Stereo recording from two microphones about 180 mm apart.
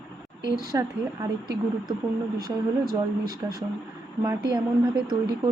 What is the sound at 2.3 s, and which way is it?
Speech, 55° right (ahead or behind).